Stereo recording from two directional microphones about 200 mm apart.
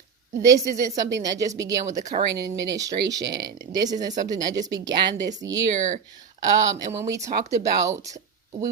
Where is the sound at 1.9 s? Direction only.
35° right (ahead or behind).